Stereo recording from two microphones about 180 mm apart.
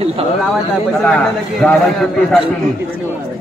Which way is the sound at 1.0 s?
5° left (ahead or behind).